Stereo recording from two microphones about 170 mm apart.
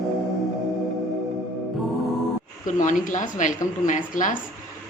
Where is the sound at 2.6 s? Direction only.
50° left (ahead or behind).